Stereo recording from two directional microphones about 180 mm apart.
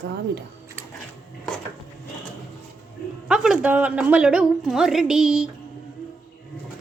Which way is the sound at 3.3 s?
5° right (ahead or behind).